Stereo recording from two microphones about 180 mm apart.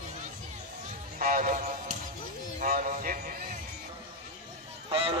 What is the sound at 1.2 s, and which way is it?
Music, 50° right (ahead or behind).